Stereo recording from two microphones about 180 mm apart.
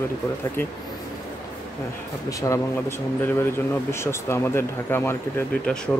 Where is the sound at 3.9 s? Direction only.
15° left (ahead or behind).